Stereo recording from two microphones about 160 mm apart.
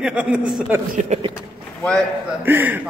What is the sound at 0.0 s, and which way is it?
Speech, 5° right (ahead or behind).